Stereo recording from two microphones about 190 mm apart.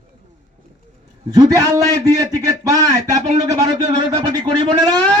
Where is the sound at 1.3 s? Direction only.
20° right (ahead or behind).